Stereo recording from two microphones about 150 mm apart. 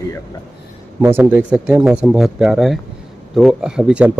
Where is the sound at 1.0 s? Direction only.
15° right (ahead or behind).